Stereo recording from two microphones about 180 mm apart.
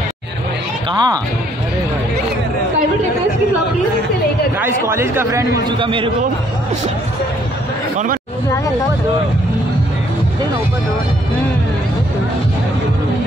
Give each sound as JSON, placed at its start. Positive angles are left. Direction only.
{"t": 0.9, "sound": "a man's voice", "side_deg": -20}
{"t": 4.6, "sound": "speech", "side_deg": -15}
{"t": 5.7, "sound": "a man's voice", "side_deg": -30}